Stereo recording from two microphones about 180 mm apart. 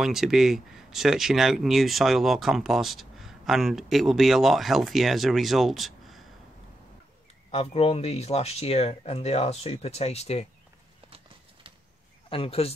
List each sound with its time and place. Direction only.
0.0 s speech: centre (ahead or behind)
7.5 s speech: 35° left (ahead or behind)
12.3 s speech: 30° left (ahead or behind)